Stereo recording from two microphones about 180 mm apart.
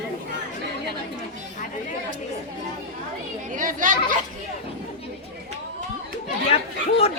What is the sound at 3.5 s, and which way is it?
Speech, 45° right (ahead or behind).